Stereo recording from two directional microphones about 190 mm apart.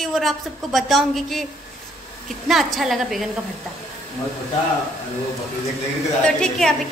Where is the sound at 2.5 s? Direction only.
Centre (ahead or behind).